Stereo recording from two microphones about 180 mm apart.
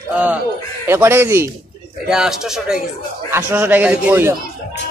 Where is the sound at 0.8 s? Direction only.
15° right (ahead or behind).